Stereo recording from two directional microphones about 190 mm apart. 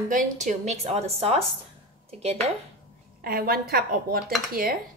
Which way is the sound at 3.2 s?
50° right (ahead or behind).